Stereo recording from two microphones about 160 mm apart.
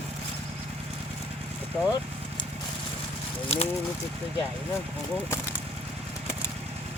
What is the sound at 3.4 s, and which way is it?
Speech, 40° left (ahead or behind).